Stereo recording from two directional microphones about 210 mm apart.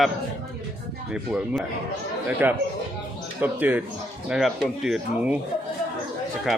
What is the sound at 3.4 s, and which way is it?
Speech, 10° right (ahead or behind).